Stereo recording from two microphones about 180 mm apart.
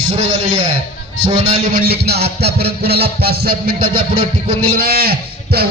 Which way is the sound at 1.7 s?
60° right (ahead or behind).